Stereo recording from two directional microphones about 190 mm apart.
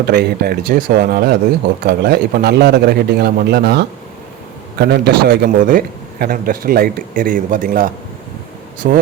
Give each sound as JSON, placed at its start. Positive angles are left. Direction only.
{"t": 0.1, "sound": "a man's voice", "side_deg": -55}